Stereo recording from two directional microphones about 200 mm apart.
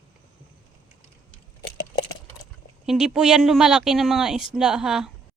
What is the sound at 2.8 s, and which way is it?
Speech, centre (ahead or behind).